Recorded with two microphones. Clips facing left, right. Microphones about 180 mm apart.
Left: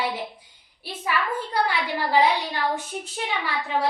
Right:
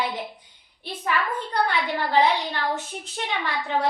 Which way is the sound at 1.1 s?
5° left (ahead or behind).